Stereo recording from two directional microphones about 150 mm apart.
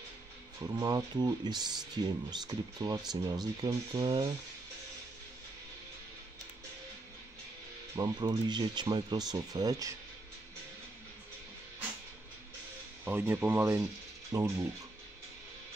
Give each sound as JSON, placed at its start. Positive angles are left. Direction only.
{"t": 0.6, "sound": "speech", "side_deg": -25}
{"t": 7.9, "sound": "speech", "side_deg": -25}
{"t": 13.0, "sound": "speech", "side_deg": -15}